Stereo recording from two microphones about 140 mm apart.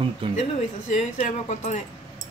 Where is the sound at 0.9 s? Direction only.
55° left (ahead or behind).